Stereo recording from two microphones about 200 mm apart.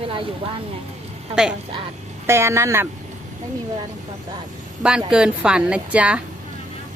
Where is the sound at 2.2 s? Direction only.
15° right (ahead or behind).